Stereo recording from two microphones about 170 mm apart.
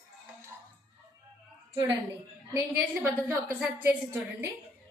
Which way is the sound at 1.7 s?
15° right (ahead or behind).